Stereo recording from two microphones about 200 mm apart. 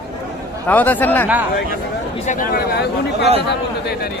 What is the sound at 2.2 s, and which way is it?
Speech, 40° left (ahead or behind).